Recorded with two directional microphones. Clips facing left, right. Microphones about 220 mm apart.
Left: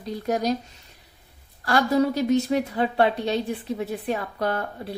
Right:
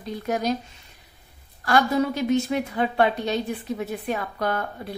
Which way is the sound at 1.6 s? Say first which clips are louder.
Left 1 dB; 35° left (ahead or behind).